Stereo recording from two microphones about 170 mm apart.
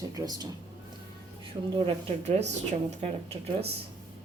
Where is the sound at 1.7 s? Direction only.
35° right (ahead or behind).